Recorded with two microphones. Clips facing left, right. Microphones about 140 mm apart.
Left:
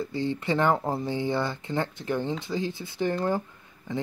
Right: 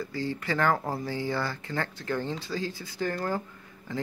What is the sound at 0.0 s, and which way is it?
Speech, 20° left (ahead or behind).